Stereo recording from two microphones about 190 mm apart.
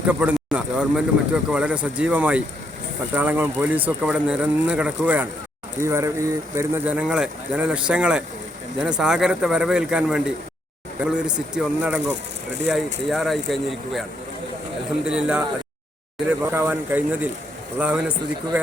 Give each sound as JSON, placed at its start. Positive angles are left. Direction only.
{"t": 0.1, "sound": "speech", "side_deg": -5}
{"t": 15.0, "sound": "speech", "side_deg": -5}